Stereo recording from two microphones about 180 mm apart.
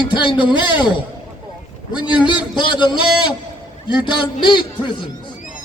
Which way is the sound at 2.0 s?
25° left (ahead or behind).